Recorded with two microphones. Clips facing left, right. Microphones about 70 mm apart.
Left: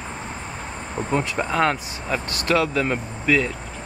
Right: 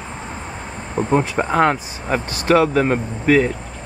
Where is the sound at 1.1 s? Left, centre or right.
Right.